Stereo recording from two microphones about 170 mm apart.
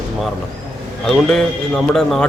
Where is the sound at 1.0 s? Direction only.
5° left (ahead or behind).